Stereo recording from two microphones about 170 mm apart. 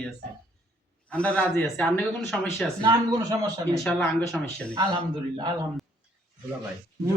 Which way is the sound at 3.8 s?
5° left (ahead or behind).